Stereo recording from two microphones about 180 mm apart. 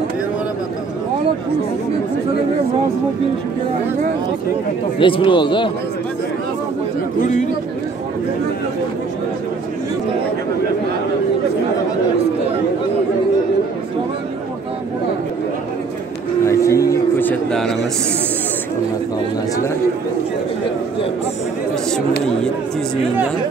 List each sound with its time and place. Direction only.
4.9 s speech: 30° left (ahead or behind)
7.2 s speech: 40° left (ahead or behind)
16.4 s a sound: 15° left (ahead or behind)